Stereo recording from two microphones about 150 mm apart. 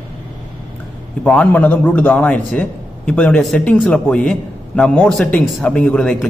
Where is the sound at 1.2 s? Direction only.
10° left (ahead or behind).